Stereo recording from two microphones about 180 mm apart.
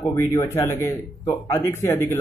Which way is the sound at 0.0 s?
15° left (ahead or behind).